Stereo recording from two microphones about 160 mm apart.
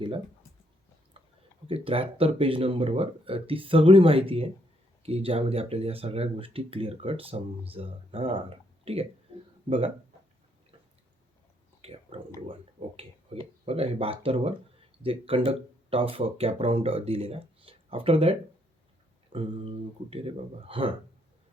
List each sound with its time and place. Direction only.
1.6 s speech: 35° right (ahead or behind)
11.8 s speech: 35° right (ahead or behind)